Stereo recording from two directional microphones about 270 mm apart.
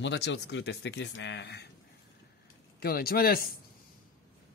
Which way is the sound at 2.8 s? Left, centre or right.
Left.